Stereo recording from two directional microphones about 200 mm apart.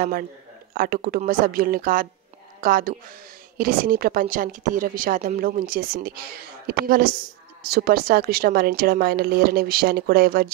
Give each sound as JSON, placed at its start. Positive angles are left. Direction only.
{"t": 0.7, "sound": "a woman's voice", "side_deg": -45}